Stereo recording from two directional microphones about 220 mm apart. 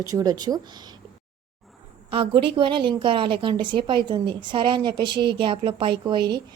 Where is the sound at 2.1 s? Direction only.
25° right (ahead or behind).